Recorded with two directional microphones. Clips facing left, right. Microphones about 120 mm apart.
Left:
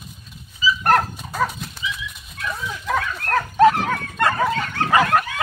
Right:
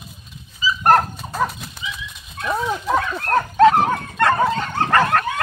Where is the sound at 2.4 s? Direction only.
55° right (ahead or behind).